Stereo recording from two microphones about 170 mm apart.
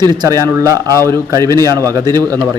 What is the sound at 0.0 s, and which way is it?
A man's voice, 25° right (ahead or behind).